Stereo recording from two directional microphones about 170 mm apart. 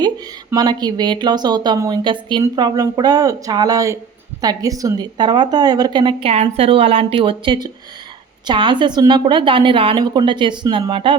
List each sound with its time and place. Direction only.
0.5 s speech: 25° right (ahead or behind)